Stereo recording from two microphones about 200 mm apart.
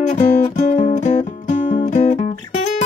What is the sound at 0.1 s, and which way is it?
Music, 40° left (ahead or behind).